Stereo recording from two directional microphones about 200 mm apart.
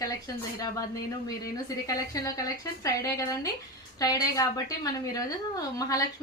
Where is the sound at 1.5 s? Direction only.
15° left (ahead or behind).